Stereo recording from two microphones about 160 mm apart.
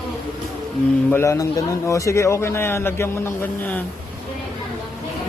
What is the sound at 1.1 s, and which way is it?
A man's voice, 20° left (ahead or behind).